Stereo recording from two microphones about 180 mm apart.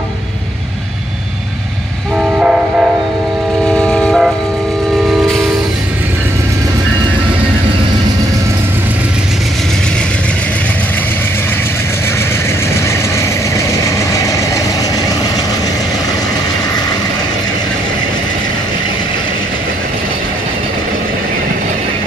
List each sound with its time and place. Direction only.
2.1 s train: 5° right (ahead or behind)
13.8 s vehicle: 20° left (ahead or behind)